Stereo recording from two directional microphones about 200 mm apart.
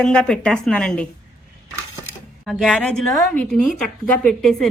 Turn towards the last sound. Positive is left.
turn(degrees=0)  # may be behind; listen again after turning